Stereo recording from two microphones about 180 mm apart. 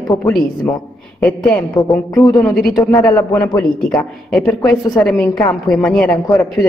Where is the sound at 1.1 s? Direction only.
5° left (ahead or behind).